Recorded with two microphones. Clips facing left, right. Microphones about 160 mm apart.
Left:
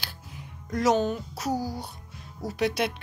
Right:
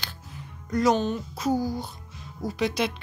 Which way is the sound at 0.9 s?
20° right (ahead or behind).